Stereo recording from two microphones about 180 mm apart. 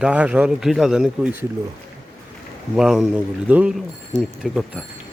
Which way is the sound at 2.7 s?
Centre (ahead or behind).